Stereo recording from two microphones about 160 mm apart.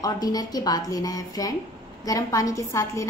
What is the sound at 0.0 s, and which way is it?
A woman's voice, 25° left (ahead or behind).